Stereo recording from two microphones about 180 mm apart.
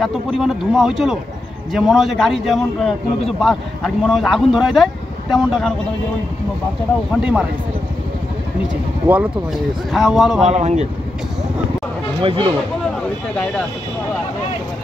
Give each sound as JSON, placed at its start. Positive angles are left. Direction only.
{"t": 0.0, "sound": "speech", "side_deg": 0}
{"t": 7.2, "sound": "speech", "side_deg": -5}
{"t": 9.0, "sound": "speech", "side_deg": -10}
{"t": 10.4, "sound": "speech", "side_deg": -40}
{"t": 12.2, "sound": "speech", "side_deg": -30}